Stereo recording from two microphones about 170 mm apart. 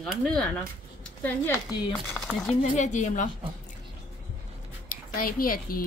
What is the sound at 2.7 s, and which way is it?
Speech, 45° left (ahead or behind).